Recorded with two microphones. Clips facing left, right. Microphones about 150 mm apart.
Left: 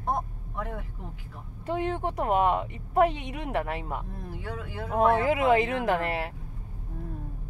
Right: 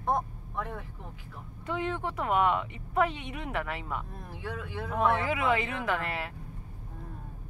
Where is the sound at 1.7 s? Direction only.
45° left (ahead or behind).